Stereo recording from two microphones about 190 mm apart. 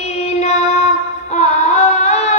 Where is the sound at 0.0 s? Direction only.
35° left (ahead or behind).